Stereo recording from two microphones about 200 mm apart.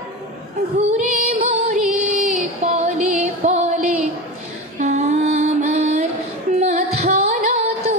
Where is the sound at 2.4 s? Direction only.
30° right (ahead or behind).